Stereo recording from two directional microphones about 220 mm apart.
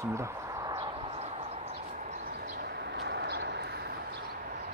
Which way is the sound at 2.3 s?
45° right (ahead or behind).